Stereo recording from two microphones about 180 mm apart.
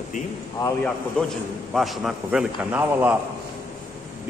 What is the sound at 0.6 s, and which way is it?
A man's voice, 10° left (ahead or behind).